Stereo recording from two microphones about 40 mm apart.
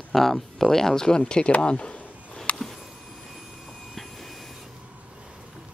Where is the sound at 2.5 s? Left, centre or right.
Left.